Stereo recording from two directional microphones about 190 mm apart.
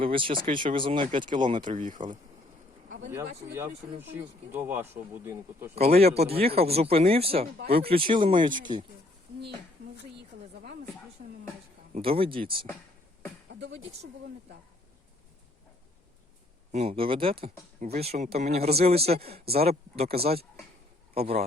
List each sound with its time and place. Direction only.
0.0 s speech: 25° right (ahead or behind)
1.7 s speech: 40° right (ahead or behind)
3.1 s speech: 15° right (ahead or behind)
5.7 s speech: 35° right (ahead or behind)
11.9 s speech: 30° right (ahead or behind)
13.5 s a sound: 65° right (ahead or behind)
16.7 s speech: 30° right (ahead or behind)